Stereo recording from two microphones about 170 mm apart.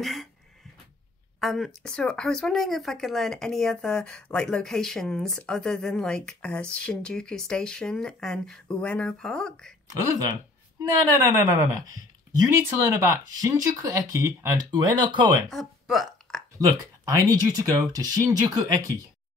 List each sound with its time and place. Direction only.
0.0 s a sound: centre (ahead or behind)
1.4 s speech: centre (ahead or behind)
10.8 s speech: 15° right (ahead or behind)
12.8 s speech: 15° right (ahead or behind)
14.7 s speech: 25° right (ahead or behind)
15.5 s a sound: centre (ahead or behind)
16.5 s speech: 20° right (ahead or behind)